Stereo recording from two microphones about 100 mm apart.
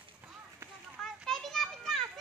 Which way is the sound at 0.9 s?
5° left (ahead or behind).